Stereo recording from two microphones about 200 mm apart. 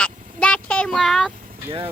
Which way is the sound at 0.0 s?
5° left (ahead or behind).